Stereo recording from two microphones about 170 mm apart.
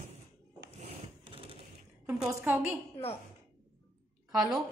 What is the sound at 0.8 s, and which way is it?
Scrape, 30° right (ahead or behind).